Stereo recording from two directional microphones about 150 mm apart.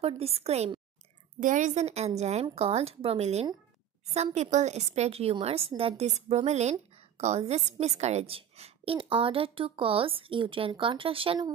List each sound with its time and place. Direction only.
0.0 s a woman's voice: 40° right (ahead or behind)
1.4 s a woman's voice: 55° right (ahead or behind); by 11.4 s 35° right (ahead or behind)